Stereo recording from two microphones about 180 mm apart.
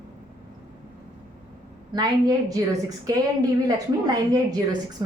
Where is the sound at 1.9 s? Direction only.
20° right (ahead or behind).